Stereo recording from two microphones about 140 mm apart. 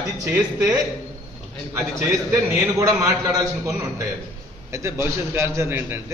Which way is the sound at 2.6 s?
20° right (ahead or behind).